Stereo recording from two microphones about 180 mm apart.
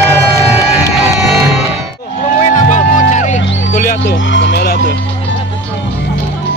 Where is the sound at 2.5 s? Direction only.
45° left (ahead or behind).